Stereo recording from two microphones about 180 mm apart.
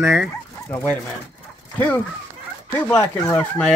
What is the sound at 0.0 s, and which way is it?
Speech, 10° right (ahead or behind).